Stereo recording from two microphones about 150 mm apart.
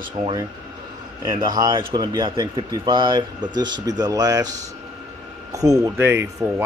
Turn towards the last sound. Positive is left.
turn(degrees=-15)  # may be behind; listen again after turning